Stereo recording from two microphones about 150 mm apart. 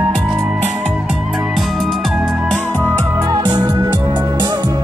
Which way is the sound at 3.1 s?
30° right (ahead or behind).